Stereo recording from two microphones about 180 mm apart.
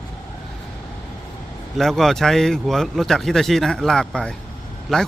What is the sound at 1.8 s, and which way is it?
Speech, centre (ahead or behind).